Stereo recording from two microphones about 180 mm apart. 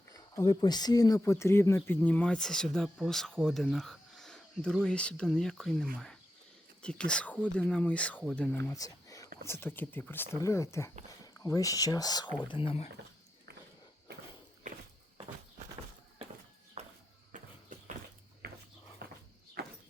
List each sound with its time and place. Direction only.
0.1 s speech: 20° left (ahead or behind)
16.8 s walk: 35° right (ahead or behind)
18.4 s walk: 60° right (ahead or behind)
19.0 s a sound: 55° right (ahead or behind)